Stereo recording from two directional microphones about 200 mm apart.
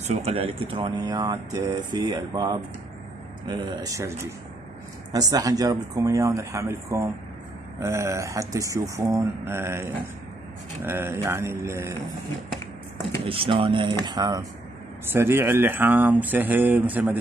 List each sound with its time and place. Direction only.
0.0 s speech: 30° right (ahead or behind); by 9.8 s 10° right (ahead or behind)
10.9 s speech: 10° right (ahead or behind)
13.2 s speech: 25° right (ahead or behind); by 17.2 s 10° right (ahead or behind)